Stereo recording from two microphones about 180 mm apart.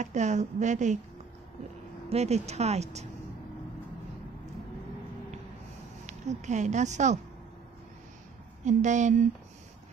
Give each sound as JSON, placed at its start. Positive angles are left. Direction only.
{"t": 0.0, "sound": "speech", "side_deg": -40}
{"t": 2.0, "sound": "speech", "side_deg": -35}
{"t": 6.0, "sound": "speech", "side_deg": -40}
{"t": 8.6, "sound": "speech", "side_deg": -40}